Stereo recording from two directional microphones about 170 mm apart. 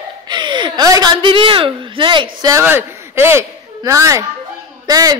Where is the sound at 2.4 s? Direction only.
15° right (ahead or behind).